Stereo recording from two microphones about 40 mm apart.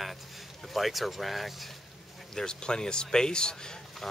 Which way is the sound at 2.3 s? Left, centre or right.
Left.